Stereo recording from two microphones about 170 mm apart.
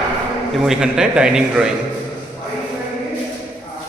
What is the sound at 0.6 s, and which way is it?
A man's voice, 5° right (ahead or behind).